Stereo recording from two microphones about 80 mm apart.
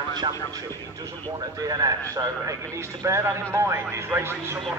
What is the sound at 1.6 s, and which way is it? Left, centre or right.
Speech, right.